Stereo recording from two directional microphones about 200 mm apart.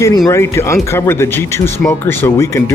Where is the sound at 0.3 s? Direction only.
15° left (ahead or behind).